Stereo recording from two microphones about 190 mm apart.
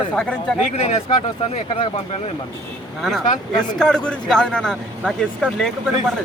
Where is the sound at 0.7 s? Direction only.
35° left (ahead or behind).